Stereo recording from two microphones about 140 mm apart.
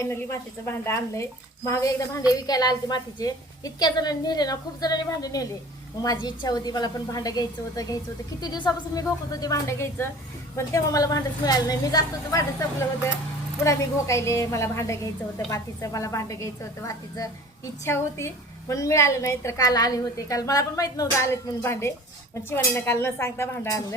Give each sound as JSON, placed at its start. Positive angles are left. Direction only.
{"t": 0.0, "sound": "a woman's voice", "side_deg": 20}
{"t": 13.7, "sound": "a woman's voice", "side_deg": 20}